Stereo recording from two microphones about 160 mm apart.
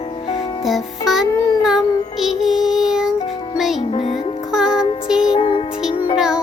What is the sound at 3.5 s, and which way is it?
Music, centre (ahead or behind).